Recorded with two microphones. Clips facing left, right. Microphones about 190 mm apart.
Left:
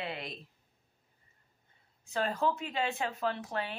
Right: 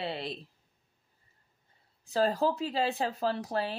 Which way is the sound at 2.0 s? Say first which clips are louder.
Right 4 dB; 35° right (ahead or behind).